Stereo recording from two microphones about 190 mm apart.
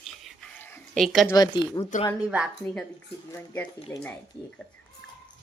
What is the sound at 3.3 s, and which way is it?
Speech, 10° left (ahead or behind).